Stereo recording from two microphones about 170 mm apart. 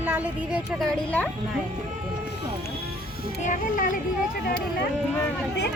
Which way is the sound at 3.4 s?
50° left (ahead or behind).